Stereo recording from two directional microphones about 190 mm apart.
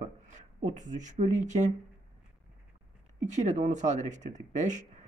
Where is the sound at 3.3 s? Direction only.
40° right (ahead or behind).